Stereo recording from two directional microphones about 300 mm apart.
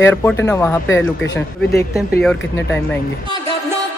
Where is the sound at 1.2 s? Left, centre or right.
Left.